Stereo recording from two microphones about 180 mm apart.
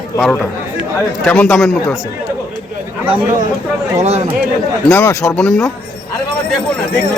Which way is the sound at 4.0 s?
35° right (ahead or behind).